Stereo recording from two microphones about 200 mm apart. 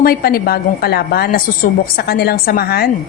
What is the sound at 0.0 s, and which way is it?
A woman's voice, 50° left (ahead or behind).